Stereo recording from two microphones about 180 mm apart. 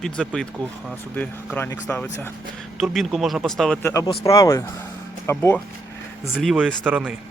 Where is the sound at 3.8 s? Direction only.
15° left (ahead or behind).